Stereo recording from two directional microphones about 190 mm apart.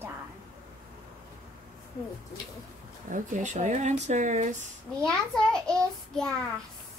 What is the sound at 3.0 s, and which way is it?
Speech, 40° right (ahead or behind).